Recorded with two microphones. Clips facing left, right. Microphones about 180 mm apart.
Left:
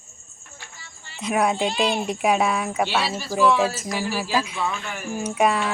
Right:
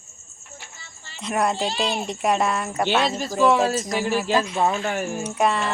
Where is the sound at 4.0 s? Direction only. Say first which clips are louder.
Right 2 dB; 5° left (ahead or behind).